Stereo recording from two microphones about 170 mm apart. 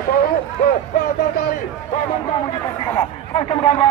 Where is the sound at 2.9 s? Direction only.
35° left (ahead or behind).